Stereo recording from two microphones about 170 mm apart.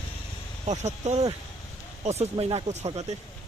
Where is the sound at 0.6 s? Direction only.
45° right (ahead or behind).